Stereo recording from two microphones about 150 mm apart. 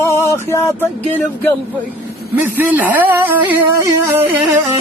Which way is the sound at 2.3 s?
15° right (ahead or behind).